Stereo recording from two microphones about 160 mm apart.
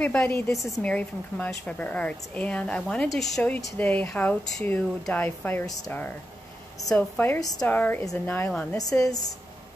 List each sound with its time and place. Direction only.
0.0 s a woman's voice: 10° left (ahead or behind)
7.3 s speech: 25° left (ahead or behind)
7.6 s a woman's voice: 10° left (ahead or behind)